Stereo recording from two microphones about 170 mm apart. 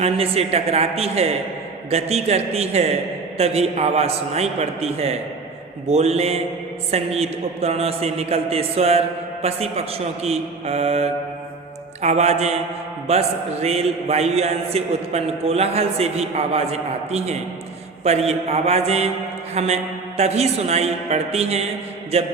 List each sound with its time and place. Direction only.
0.0 s a man's voice: 35° right (ahead or behind)